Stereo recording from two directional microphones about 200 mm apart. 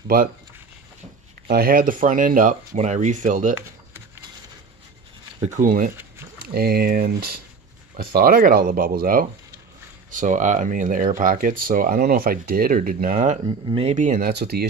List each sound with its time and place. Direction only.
1.5 s speech: 45° right (ahead or behind)
5.4 s speech: 40° right (ahead or behind)
13.5 s speech: 25° right (ahead or behind)
14.3 s speech: 55° right (ahead or behind)